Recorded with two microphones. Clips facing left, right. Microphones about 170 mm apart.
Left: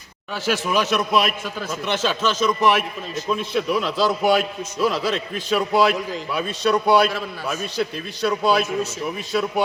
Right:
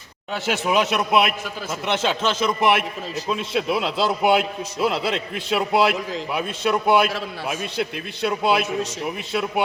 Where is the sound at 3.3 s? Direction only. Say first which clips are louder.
Left 1 dB; 75° right (ahead or behind).